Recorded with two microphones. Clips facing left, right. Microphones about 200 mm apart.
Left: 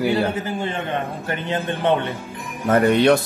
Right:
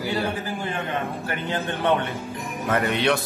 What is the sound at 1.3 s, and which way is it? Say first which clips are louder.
Speech: left 5 dB; 20° left (ahead or behind).